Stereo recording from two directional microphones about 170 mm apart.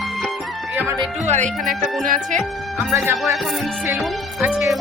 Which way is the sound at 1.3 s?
50° right (ahead or behind).